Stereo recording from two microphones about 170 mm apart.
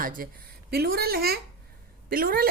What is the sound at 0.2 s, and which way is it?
A woman's voice, 60° right (ahead or behind).